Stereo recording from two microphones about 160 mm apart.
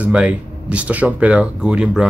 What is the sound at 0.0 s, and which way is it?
Speech, 5° right (ahead or behind).